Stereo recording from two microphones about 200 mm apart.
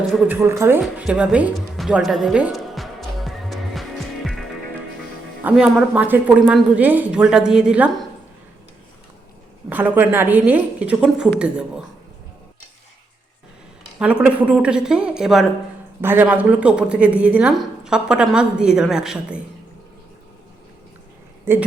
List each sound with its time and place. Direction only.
0.1 s music: 5° right (ahead or behind)
5.4 s a woman's voice: 5° right (ahead or behind)
9.6 s a woman's voice: 10° right (ahead or behind)
14.0 s a woman's voice: 5° right (ahead or behind)
21.5 s a woman's voice: 10° right (ahead or behind)